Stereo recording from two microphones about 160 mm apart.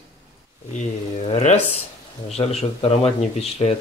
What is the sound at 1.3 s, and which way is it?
Speech, 45° left (ahead or behind).